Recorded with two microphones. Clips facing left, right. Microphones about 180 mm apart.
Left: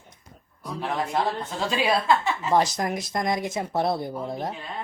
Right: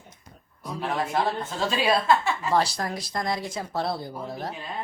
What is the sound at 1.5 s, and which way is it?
A woman's voice, 15° left (ahead or behind).